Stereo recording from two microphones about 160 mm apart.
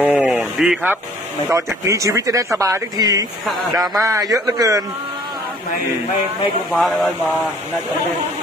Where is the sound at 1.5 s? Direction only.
20° right (ahead or behind).